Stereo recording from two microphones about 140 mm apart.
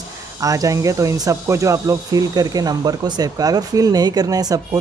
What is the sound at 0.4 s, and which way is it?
Speech, 25° right (ahead or behind).